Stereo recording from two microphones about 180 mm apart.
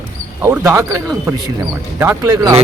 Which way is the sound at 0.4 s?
10° right (ahead or behind).